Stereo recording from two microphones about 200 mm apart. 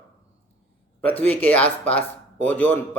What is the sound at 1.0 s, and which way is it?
Speech, 10° left (ahead or behind).